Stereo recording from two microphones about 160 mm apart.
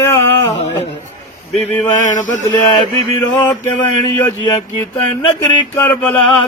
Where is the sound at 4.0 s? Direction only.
25° left (ahead or behind).